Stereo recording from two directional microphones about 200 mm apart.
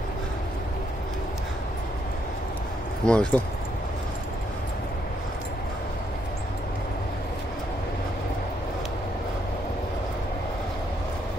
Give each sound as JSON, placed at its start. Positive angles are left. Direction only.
{"t": 3.1, "sound": "speech", "side_deg": 5}